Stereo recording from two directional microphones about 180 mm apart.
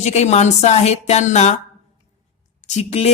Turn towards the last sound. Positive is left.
turn(degrees=35)  # may be behind; listen again after turning